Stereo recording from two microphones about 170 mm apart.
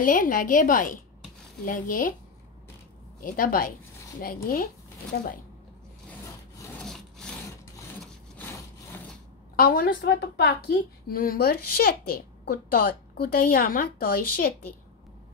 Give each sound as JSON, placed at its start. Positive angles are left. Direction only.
{"t": 0.0, "sound": "a woman's voice", "side_deg": 55}
{"t": 3.2, "sound": "a woman's voice", "side_deg": 55}
{"t": 6.8, "sound": "wood", "side_deg": 5}
{"t": 8.4, "sound": "sawing", "side_deg": 15}
{"t": 9.6, "sound": "a woman's voice", "side_deg": 60}